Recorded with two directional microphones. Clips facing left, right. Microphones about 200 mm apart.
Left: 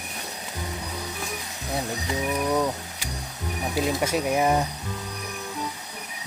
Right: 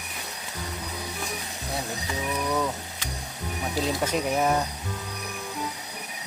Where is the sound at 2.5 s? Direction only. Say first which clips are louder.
Left 3 dB; 15° left (ahead or behind).